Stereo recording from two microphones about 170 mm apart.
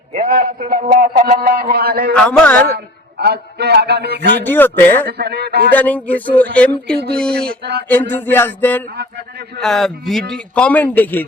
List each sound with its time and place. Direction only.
0.1 s a man's voice: 55° right (ahead or behind)
2.1 s a man's voice: 10° left (ahead or behind)
2.6 s a man's voice: 70° right (ahead or behind)
4.4 s a man's voice: 10° left (ahead or behind)
5.1 s a man's voice: 70° right (ahead or behind)
5.7 s a man's voice: 10° left (ahead or behind)
7.2 s a sound: 5° left (ahead or behind)
7.6 s a man's voice: 75° right (ahead or behind)
7.9 s a man's voice: 10° left (ahead or behind)